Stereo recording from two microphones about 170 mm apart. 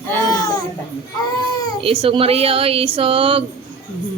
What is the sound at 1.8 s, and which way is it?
Speech, 35° right (ahead or behind).